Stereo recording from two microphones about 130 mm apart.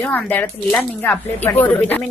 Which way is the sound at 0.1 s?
15° left (ahead or behind).